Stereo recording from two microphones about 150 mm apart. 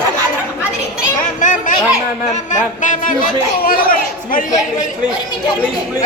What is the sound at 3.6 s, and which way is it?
Speech, 70° left (ahead or behind).